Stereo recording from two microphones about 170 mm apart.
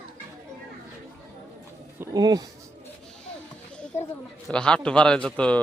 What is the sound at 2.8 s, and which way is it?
Children playing, 5° left (ahead or behind).